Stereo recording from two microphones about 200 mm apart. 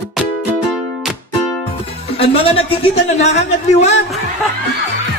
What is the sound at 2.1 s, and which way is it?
A man's voice, 30° left (ahead or behind).